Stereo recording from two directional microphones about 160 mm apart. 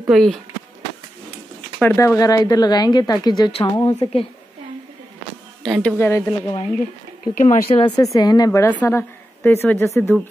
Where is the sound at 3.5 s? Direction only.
35° left (ahead or behind).